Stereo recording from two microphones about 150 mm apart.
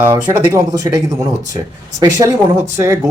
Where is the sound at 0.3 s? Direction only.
15° right (ahead or behind).